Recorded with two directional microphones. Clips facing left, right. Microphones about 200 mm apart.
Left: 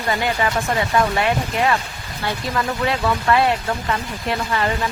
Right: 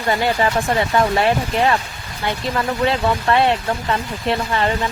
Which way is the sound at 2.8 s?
30° right (ahead or behind).